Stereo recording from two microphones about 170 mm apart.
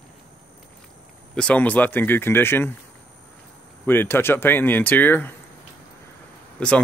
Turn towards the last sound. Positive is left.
turn(degrees=5)  # may be behind; listen again after turning